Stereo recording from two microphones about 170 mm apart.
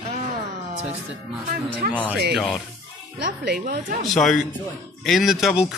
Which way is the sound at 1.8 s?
60° right (ahead or behind).